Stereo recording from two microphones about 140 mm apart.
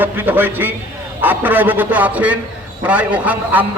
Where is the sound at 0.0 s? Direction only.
15° right (ahead or behind).